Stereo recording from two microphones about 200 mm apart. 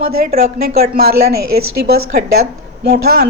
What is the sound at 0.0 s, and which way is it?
A woman's voice, 50° right (ahead or behind).